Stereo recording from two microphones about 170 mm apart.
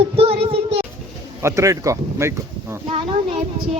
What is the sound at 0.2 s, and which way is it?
Child singing, 35° right (ahead or behind).